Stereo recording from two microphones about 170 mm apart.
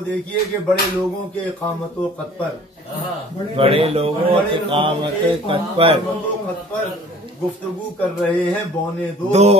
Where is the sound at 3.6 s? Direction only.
35° right (ahead or behind).